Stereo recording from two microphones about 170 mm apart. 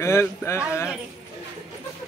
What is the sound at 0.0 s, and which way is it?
Speech, 15° left (ahead or behind).